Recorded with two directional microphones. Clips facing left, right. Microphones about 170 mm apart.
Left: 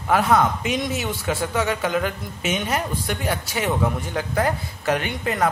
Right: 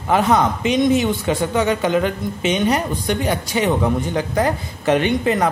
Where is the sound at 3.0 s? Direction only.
20° right (ahead or behind).